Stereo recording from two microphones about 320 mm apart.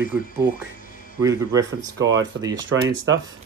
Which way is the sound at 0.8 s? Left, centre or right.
Left.